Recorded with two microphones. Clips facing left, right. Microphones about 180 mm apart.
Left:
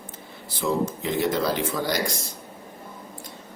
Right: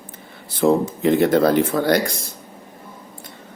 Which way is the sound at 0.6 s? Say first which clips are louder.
Right 8 dB; 60° right (ahead or behind).